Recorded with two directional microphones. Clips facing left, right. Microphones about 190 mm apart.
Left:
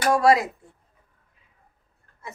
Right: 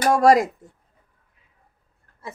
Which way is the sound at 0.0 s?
45° right (ahead or behind).